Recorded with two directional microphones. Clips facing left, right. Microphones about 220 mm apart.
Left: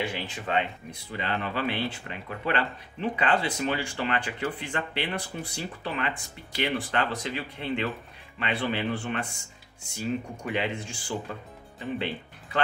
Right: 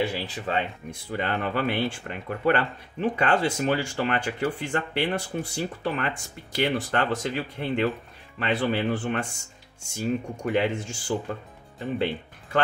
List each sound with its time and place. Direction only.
0.0 s speech: 35° right (ahead or behind)